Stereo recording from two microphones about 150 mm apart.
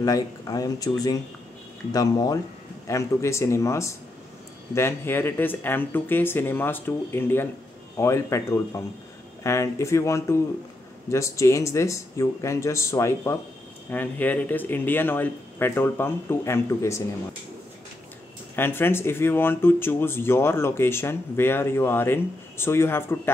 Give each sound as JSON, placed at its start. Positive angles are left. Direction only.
{"t": 0.0, "sound": "speech", "side_deg": 25}
{"t": 18.6, "sound": "speech", "side_deg": 15}